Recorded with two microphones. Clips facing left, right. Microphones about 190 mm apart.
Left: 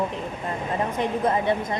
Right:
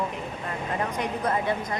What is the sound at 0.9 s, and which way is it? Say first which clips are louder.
Speech: left 5 dB; 25° left (ahead or behind).